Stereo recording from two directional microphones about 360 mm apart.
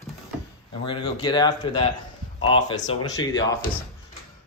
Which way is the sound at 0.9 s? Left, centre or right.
Centre.